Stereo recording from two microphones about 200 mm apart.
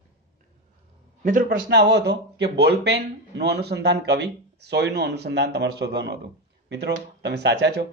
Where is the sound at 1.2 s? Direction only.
40° right (ahead or behind).